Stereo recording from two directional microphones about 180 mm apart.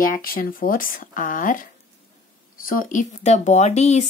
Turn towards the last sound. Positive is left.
turn(degrees=40)  # may be behind; listen again after turning